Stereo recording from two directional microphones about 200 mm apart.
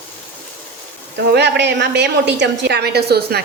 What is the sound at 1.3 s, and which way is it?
A woman's voice, 60° right (ahead or behind).